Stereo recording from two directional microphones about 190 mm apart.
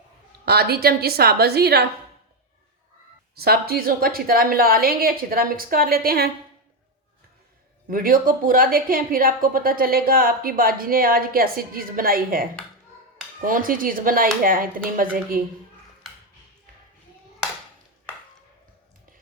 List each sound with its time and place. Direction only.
0.4 s a woman's voice: 55° right (ahead or behind)
3.3 s a woman's voice: 55° right (ahead or behind)
7.9 s a woman's voice: 50° right (ahead or behind)